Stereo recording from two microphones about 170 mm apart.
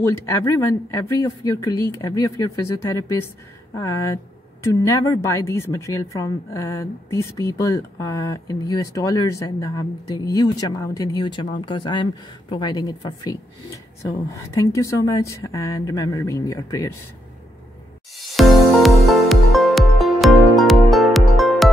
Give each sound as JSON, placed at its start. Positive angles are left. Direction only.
{"t": 0.0, "sound": "a woman's voice", "side_deg": 15}
{"t": 18.1, "sound": "music", "side_deg": 0}